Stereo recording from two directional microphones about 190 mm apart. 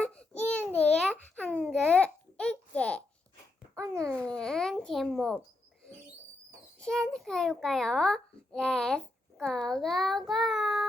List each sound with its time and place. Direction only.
0.0 s babbling: 5° left (ahead or behind)
3.8 s babbling: 15° right (ahead or behind)
4.2 s babbling: 5° left (ahead or behind)
6.7 s a sound: 5° left (ahead or behind)